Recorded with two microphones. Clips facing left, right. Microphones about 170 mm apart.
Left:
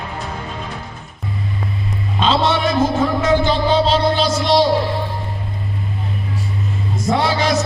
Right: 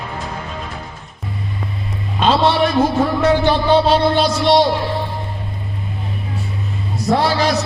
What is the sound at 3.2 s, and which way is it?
Music, 60° right (ahead or behind).